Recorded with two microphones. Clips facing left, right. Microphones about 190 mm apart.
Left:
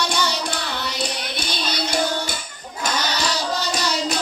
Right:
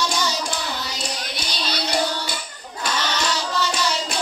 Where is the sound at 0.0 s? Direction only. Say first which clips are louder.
Left 1 dB; 60° left (ahead or behind).